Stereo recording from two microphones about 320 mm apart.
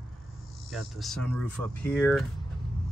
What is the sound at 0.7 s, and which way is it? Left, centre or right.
Speech, centre.